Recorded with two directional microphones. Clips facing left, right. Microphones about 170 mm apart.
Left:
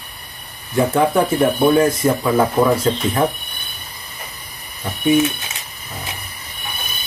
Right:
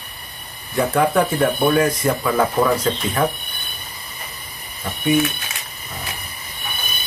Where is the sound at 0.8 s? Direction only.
10° left (ahead or behind).